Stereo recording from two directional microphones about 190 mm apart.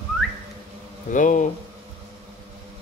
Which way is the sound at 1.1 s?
40° left (ahead or behind).